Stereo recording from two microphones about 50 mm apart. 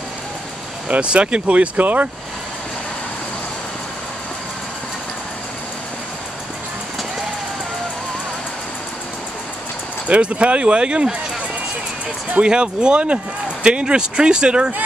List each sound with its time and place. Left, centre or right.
0.8 s speech: right
10.0 s speech: right
12.4 s speech: centre